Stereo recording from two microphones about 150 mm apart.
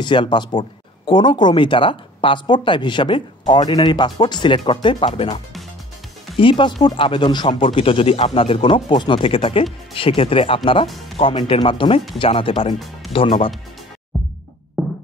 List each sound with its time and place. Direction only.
0.0 s speech: 30° left (ahead or behind)
12.7 s speech: centre (ahead or behind)
13.1 s speech: 35° left (ahead or behind)